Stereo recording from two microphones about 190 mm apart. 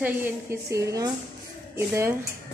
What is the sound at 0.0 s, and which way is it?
A woman's voice, 15° right (ahead or behind).